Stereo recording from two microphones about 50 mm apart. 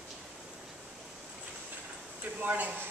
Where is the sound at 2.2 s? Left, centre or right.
Right.